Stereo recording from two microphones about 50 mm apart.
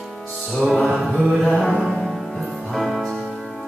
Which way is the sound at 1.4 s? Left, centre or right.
Centre.